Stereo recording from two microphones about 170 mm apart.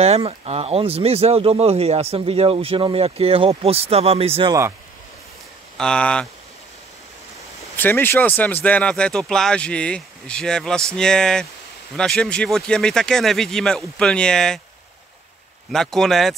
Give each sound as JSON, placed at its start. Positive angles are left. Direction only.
{"t": 0.0, "sound": "speech", "side_deg": -35}
{"t": 4.5, "sound": "speech", "side_deg": -15}
{"t": 5.8, "sound": "speech", "side_deg": 5}
{"t": 7.7, "sound": "speech", "side_deg": 10}
{"t": 15.7, "sound": "speech", "side_deg": 0}